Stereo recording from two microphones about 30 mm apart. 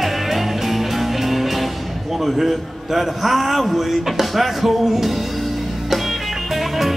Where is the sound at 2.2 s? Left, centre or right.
Centre.